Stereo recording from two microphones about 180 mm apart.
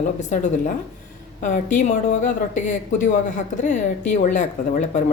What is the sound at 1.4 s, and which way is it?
A woman's voice, 45° left (ahead or behind).